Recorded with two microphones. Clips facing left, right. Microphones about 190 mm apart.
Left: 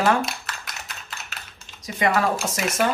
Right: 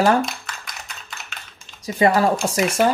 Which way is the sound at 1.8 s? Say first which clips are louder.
Right 5 dB; 30° right (ahead or behind).